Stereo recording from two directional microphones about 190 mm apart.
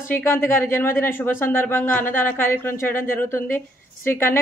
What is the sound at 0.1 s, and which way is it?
A man's voice, 10° left (ahead or behind).